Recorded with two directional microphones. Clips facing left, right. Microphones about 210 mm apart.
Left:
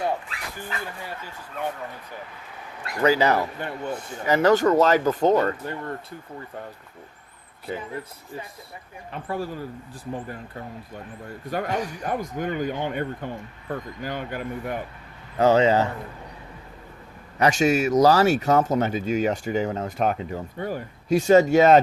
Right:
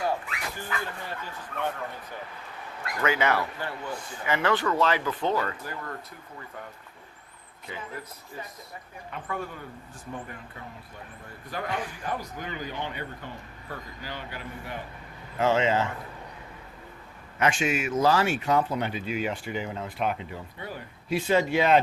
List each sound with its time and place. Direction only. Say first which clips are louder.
0.0 s dog: left 2 dB; 25° left (ahead or behind)
3.0 s speech: left 6 dB; 35° left (ahead or behind)
3.3 s a man's voice: left 4 dB; 20° left (ahead or behind)
4.2 s speech: left 8 dB; 40° left (ahead or behind)
5.6 s a man's voice: left 6 dB; 30° left (ahead or behind)
9.2 s speech: left 6 dB; 35° left (ahead or behind); by 14.8 s 50° left (ahead or behind)
15.4 s speech: left 6 dB; 40° left (ahead or behind)
17.3 s speech: left 6 dB; 40° left (ahead or behind)